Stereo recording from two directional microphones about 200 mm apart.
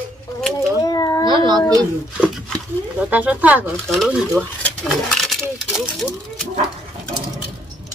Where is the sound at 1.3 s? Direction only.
25° right (ahead or behind).